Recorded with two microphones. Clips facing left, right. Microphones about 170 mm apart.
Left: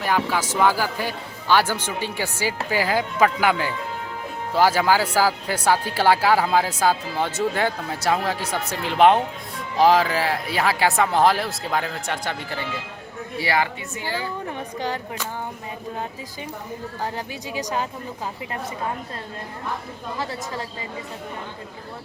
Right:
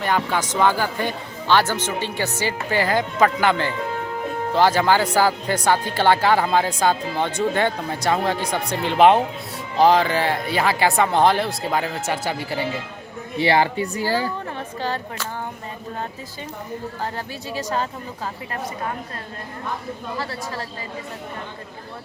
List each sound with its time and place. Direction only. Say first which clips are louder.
0.0 s speech: right 1 dB; 5° left (ahead or behind)
13.4 s a woman's voice: right 5 dB; 30° right (ahead or behind)
14.8 s speech: right 1 dB; 15° left (ahead or behind)
17.0 s speech: even; 15° left (ahead or behind)
20.1 s speech: left 2 dB; 20° left (ahead or behind)